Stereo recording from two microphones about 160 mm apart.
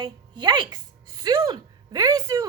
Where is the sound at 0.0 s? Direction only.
25° right (ahead or behind).